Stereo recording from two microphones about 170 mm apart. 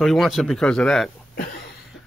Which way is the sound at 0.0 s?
Centre (ahead or behind).